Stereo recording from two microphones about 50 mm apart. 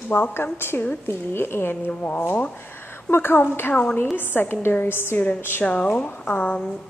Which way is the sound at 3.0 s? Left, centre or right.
Left.